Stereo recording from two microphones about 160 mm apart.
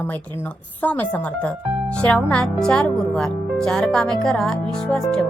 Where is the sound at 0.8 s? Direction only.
10° left (ahead or behind).